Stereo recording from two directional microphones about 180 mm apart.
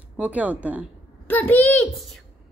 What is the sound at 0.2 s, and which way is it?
Speech, 10° right (ahead or behind).